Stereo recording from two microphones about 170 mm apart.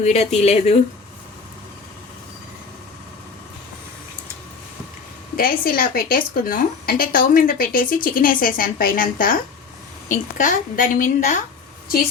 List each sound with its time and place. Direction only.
0.0 s speech: 40° left (ahead or behind)
5.4 s a woman's voice: 60° left (ahead or behind)